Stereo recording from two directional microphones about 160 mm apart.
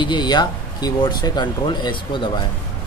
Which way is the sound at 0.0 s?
30° left (ahead or behind).